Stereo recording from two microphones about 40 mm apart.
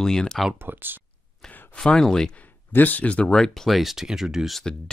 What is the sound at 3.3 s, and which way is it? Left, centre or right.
Speech, centre.